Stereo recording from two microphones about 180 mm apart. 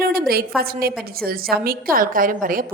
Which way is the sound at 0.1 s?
55° right (ahead or behind).